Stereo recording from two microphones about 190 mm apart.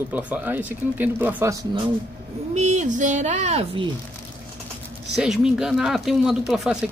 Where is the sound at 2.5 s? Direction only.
40° right (ahead or behind).